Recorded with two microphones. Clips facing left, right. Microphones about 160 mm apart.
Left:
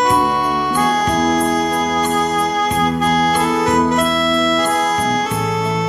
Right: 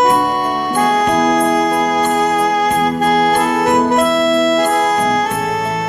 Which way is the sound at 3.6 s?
55° right (ahead or behind).